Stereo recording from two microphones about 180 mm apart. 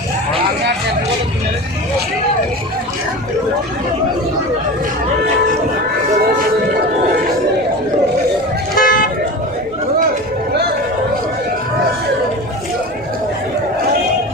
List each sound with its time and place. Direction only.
8.7 s toot: 50° left (ahead or behind)